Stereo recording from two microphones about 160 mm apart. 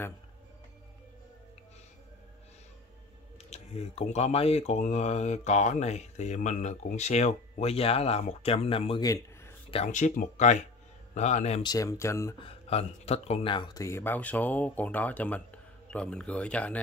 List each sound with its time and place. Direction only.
3.4 s speech: 40° left (ahead or behind)
9.0 s speech: 20° left (ahead or behind)
9.8 s speech: 50° left (ahead or behind)
11.6 s speech: 20° left (ahead or behind)
12.4 s speech: 40° left (ahead or behind)
13.8 s speech: 15° left (ahead or behind)